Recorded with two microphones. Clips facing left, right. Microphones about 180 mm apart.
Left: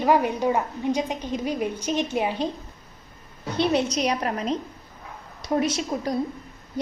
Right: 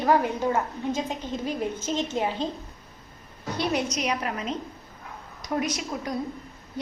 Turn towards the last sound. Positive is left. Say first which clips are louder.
# left 4 dB
turn(degrees=30)  # may be behind; listen again after turning